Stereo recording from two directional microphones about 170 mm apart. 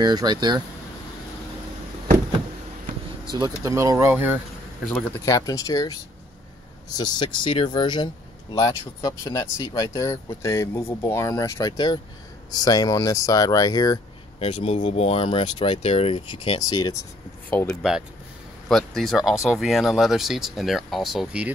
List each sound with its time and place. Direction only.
0.0 s speech: 25° right (ahead or behind)
3.3 s speech: 20° right (ahead or behind)
4.8 s speech: 5° left (ahead or behind)
5.2 s speech: 20° left (ahead or behind)
7.0 s speech: 25° left (ahead or behind)
14.4 s speech: 35° left (ahead or behind)
17.5 s speech: 10° left (ahead or behind)